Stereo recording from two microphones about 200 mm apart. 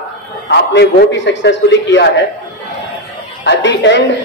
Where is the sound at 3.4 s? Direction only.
60° left (ahead or behind).